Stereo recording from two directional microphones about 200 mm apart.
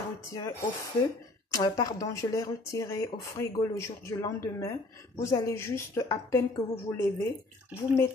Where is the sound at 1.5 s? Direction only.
20° left (ahead or behind).